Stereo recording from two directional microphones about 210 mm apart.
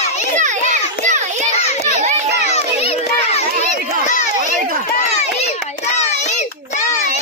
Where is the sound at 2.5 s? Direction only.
30° left (ahead or behind).